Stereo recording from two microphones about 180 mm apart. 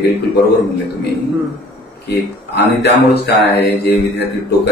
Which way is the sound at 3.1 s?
65° left (ahead or behind).